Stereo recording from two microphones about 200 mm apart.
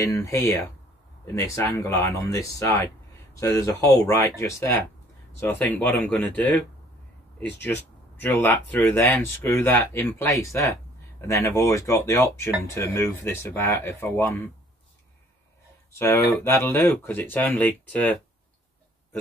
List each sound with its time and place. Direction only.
0.0 s speech: 15° left (ahead or behind)
7.6 s speech: 10° left (ahead or behind)
15.9 s speech: 15° left (ahead or behind)